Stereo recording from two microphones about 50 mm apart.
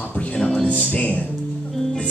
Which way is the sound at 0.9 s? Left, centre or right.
Left.